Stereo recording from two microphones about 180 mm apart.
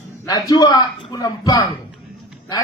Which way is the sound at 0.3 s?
20° left (ahead or behind).